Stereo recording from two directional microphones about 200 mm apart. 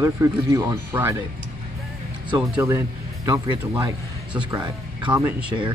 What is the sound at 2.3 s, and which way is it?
Speech, 15° right (ahead or behind).